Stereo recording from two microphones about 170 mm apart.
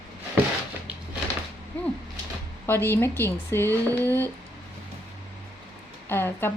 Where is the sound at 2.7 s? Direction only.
15° left (ahead or behind).